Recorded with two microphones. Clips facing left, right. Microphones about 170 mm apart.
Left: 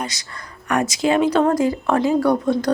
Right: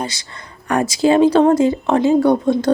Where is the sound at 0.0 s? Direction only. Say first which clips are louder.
Right 3 dB; 30° right (ahead or behind).